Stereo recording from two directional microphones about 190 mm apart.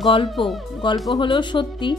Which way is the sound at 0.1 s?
25° left (ahead or behind).